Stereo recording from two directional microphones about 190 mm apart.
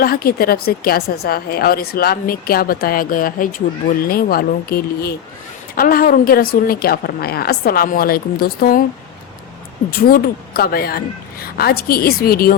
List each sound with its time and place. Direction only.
0.0 s a woman's voice: 50° left (ahead or behind)
10.0 s a woman's voice: 50° left (ahead or behind)